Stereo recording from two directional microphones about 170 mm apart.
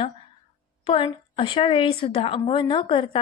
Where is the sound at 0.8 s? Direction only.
30° left (ahead or behind).